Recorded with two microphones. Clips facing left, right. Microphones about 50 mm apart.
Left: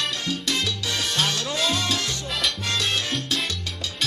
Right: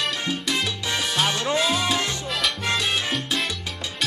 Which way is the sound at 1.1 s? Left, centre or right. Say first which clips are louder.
Right 4 dB; centre.